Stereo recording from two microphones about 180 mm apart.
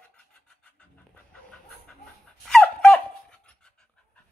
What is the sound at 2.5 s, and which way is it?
Dog, 5° left (ahead or behind).